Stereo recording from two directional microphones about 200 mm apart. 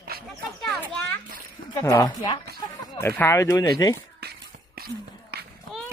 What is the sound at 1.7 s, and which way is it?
A woman's voice, 15° left (ahead or behind).